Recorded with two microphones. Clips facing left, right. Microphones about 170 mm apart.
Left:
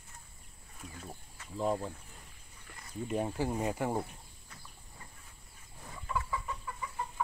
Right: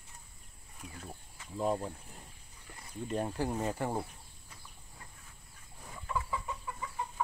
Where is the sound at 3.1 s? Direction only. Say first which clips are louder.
Left 1 dB; 5° left (ahead or behind).